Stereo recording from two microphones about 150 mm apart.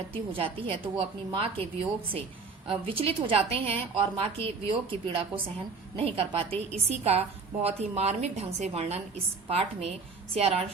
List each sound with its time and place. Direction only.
0.1 s a woman's voice: 40° right (ahead or behind)
2.6 s a woman's voice: 40° right (ahead or behind)